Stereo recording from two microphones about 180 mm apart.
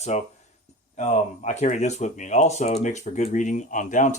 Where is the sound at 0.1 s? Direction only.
40° left (ahead or behind).